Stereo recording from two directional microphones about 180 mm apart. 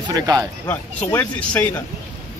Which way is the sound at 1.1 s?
10° left (ahead or behind).